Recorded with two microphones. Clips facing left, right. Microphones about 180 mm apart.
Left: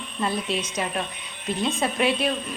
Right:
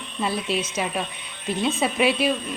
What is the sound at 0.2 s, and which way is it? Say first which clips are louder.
A woman's voice: right 1 dB; 5° right (ahead or behind).